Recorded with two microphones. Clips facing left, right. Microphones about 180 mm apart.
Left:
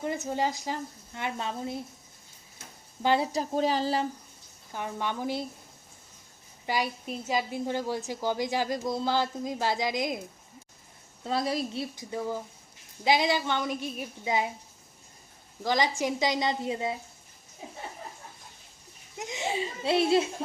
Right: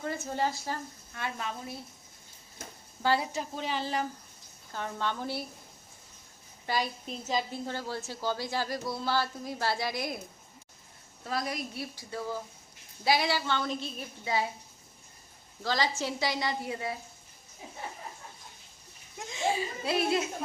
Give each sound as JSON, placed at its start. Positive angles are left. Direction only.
{"t": 0.0, "sound": "a woman's voice", "side_deg": 20}
{"t": 3.0, "sound": "a woman's voice", "side_deg": 20}
{"t": 3.3, "sound": "speech", "side_deg": 40}
{"t": 4.7, "sound": "a woman's voice", "side_deg": 15}
{"t": 6.7, "sound": "a woman's voice", "side_deg": 10}
{"t": 11.2, "sound": "a woman's voice", "side_deg": 25}
{"t": 15.6, "sound": "a woman's voice", "side_deg": 15}
{"t": 19.2, "sound": "a child's voice", "side_deg": 20}